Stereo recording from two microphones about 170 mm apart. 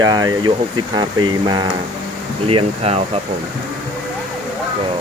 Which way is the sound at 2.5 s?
35° right (ahead or behind).